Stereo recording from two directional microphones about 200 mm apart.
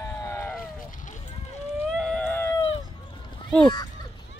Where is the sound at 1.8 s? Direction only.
5° left (ahead or behind).